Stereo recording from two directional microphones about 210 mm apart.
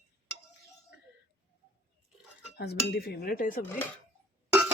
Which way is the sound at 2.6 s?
50° left (ahead or behind).